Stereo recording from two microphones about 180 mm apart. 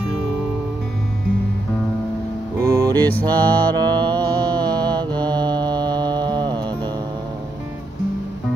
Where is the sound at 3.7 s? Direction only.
20° right (ahead or behind).